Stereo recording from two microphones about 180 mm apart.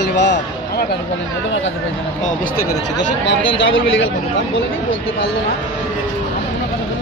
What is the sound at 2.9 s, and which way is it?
Speech, 90° left.